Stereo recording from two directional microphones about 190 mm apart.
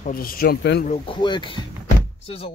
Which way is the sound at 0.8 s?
30° left (ahead or behind).